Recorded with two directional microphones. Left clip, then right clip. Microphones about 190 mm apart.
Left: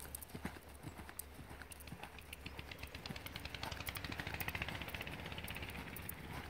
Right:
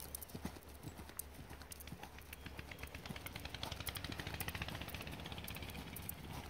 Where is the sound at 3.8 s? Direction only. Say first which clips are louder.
Left 1 dB; 50° right (ahead or behind).